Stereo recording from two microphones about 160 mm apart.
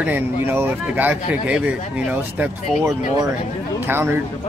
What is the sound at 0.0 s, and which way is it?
Speech, 10° right (ahead or behind).